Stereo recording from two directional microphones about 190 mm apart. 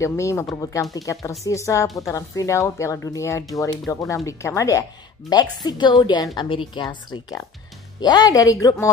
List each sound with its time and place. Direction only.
0.0 s a woman's voice: 15° left (ahead or behind)